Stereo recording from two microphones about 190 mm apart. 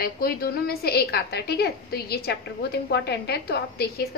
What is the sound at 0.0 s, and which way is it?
A woman's voice, 50° left (ahead or behind).